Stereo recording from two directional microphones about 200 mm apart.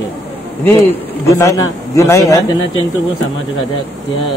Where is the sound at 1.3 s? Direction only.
15° left (ahead or behind).